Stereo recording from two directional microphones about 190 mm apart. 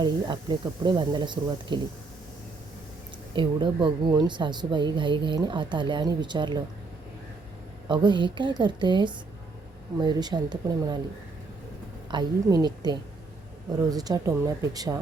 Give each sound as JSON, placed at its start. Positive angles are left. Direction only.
{"t": 0.0, "sound": "a woman's voice", "side_deg": -25}
{"t": 3.3, "sound": "a woman's voice", "side_deg": -25}
{"t": 7.9, "sound": "a woman's voice", "side_deg": -25}
{"t": 12.1, "sound": "a woman's voice", "side_deg": -20}